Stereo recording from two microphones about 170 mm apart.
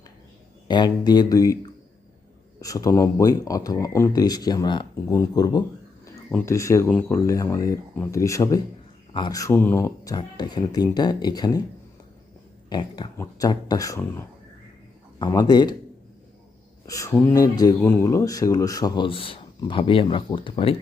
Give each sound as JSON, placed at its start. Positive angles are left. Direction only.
{"t": 0.7, "sound": "speech", "side_deg": 25}
{"t": 12.6, "sound": "speech", "side_deg": 25}
{"t": 16.8, "sound": "speech", "side_deg": 20}